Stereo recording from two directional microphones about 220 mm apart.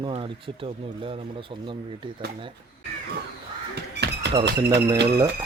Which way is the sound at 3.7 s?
50° right (ahead or behind).